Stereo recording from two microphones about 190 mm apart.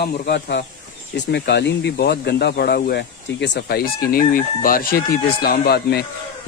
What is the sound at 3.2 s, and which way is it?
Chicken, 65° left (ahead or behind).